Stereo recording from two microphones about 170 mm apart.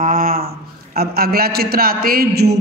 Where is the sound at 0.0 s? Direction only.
55° right (ahead or behind).